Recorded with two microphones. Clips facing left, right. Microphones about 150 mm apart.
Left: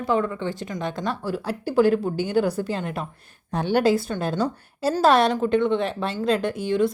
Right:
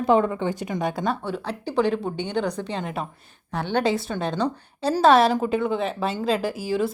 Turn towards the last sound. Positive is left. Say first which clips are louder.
# left 2 dB
turn(degrees=-5)  # may be behind; listen again after turning